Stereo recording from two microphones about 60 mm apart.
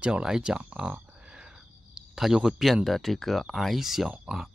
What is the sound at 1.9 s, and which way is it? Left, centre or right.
Speech, centre.